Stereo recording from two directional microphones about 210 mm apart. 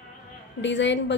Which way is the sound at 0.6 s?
60° left (ahead or behind).